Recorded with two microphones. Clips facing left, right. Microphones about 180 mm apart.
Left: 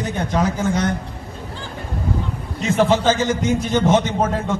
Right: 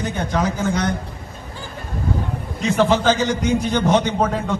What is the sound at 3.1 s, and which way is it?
A man's voice, 15° right (ahead or behind).